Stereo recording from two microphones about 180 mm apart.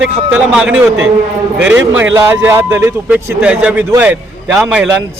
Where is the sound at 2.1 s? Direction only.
15° right (ahead or behind).